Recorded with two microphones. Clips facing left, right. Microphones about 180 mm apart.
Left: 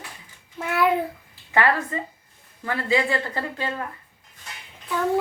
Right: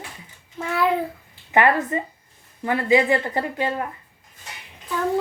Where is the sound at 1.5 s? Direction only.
20° right (ahead or behind).